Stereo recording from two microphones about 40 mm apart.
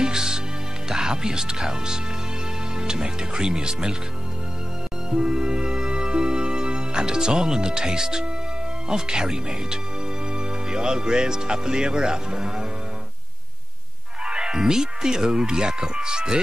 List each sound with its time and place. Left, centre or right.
0.0 s music: centre
0.8 s speech: centre
5.1 s music: centre
8.8 s speech: centre
14.2 s speech: right